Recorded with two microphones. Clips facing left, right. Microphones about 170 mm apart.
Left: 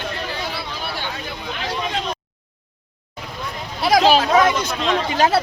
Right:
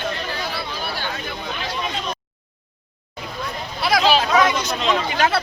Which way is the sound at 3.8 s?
45° left (ahead or behind).